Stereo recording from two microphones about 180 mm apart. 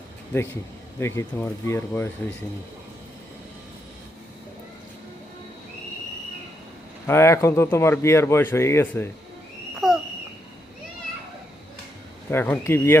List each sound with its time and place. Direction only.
0.9 s speech: 15° left (ahead or behind)
7.1 s speech: 15° left (ahead or behind)
9.8 s a sound: centre (ahead or behind)
12.3 s speech: 10° left (ahead or behind)